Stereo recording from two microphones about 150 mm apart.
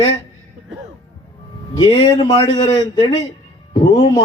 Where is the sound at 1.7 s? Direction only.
30° left (ahead or behind).